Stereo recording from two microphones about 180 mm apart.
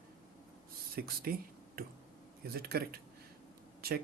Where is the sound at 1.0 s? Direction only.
55° right (ahead or behind).